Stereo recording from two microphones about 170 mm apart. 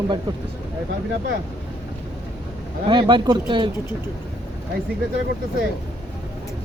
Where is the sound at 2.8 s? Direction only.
30° right (ahead or behind).